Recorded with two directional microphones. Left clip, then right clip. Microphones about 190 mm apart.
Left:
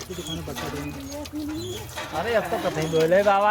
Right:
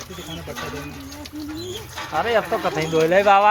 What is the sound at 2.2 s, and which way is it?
Speech, 20° right (ahead or behind).